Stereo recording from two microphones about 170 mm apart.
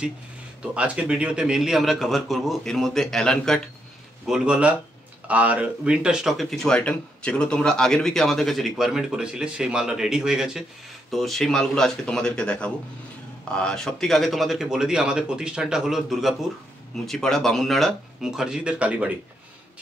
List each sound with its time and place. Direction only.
0.6 s speech: 5° right (ahead or behind)